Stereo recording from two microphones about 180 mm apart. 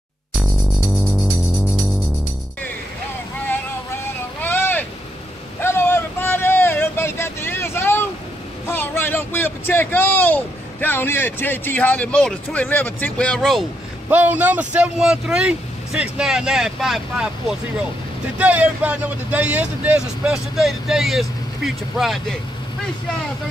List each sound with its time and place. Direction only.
0.4 s music: centre (ahead or behind)
4.4 s boat: 10° left (ahead or behind)
5.6 s vehicle: 10° left (ahead or behind)
8.6 s a sound: 10° left (ahead or behind)
14.0 s speech: 10° right (ahead or behind)